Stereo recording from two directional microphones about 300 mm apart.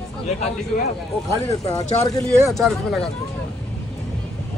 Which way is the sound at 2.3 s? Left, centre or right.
Centre.